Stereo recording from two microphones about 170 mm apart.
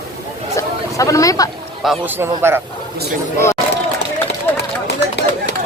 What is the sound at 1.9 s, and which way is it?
Speech, 10° right (ahead or behind).